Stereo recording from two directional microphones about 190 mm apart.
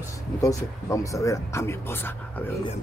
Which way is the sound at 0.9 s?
15° left (ahead or behind).